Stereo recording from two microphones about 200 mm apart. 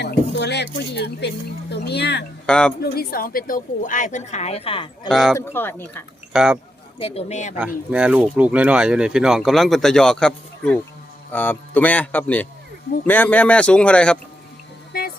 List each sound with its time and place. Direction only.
0.0 s a sound: 55° left (ahead or behind)
1.7 s speech: 55° left (ahead or behind)
2.5 s speech: 5° left (ahead or behind)
2.8 s a woman's voice: 50° left (ahead or behind); by 4.9 s 30° left (ahead or behind)
5.0 s a man's voice: centre (ahead or behind)
6.3 s speech: 5° right (ahead or behind)
7.0 s a woman's voice: 30° left (ahead or behind)
7.9 s a man's voice: 5° right (ahead or behind)